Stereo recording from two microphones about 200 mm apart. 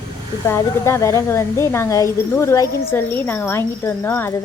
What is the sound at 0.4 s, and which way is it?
A woman's voice, 15° left (ahead or behind).